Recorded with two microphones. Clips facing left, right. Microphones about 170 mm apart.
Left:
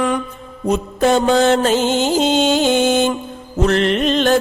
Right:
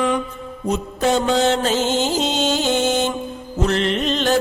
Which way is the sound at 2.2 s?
55° left (ahead or behind).